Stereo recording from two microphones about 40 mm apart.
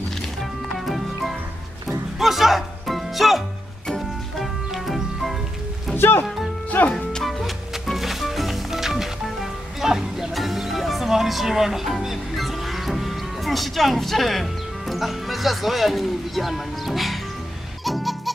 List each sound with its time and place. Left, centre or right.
0.4 s music: centre
5.9 s music: left
6.7 s music: left
7.2 s music: centre
17.8 s fowl: centre